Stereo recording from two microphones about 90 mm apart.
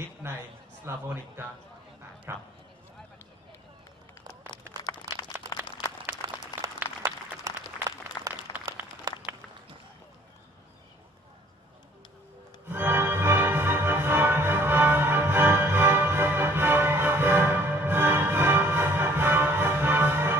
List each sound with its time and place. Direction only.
0.2 s speech: 30° right (ahead or behind)
4.8 s a sound: 45° left (ahead or behind)
5.6 s applause: 20° right (ahead or behind)
7.5 s applause: 40° right (ahead or behind)
8.2 s applause: 50° left (ahead or behind)
9.3 s a sound: 20° right (ahead or behind)
12.6 s music: 25° right (ahead or behind)